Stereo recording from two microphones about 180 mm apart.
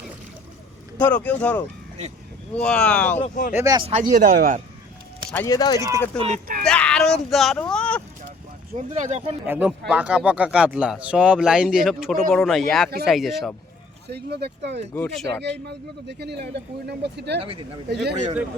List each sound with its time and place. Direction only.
0.9 s speech: 10° left (ahead or behind)
3.2 s speech: 45° left (ahead or behind)
3.5 s speech: 15° right (ahead or behind)
3.8 s speech: 35° right (ahead or behind)
4.0 s speech: 45° right (ahead or behind)
5.3 s speech: 15° left (ahead or behind)
6.1 s speech: 35° right (ahead or behind)
6.7 s speech: 5° left (ahead or behind)
8.9 s speech: 40° right (ahead or behind)
9.5 s speech: 5° right (ahead or behind)
14.1 s speech: 65° right (ahead or behind)
14.9 s speech: 5° left (ahead or behind)
15.6 s speech: 65° right (ahead or behind)
18.1 s speech: 35° right (ahead or behind)